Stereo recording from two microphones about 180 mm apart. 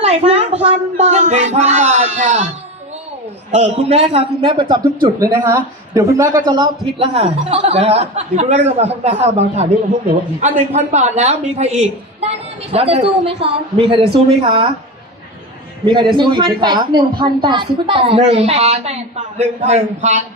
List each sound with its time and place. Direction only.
0.0 s a man's voice: 35° right (ahead or behind)
3.5 s a man's voice: 35° right (ahead or behind)
15.9 s a man's voice: 25° right (ahead or behind)